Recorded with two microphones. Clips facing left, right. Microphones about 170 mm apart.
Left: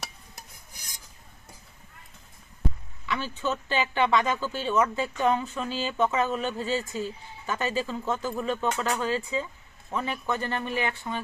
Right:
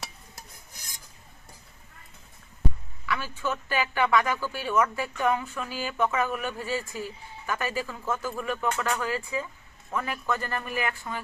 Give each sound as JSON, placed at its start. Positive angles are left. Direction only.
{"t": 3.1, "sound": "speech", "side_deg": 20}